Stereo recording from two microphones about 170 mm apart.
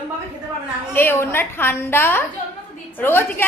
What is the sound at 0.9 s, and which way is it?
A woman's voice, 15° left (ahead or behind).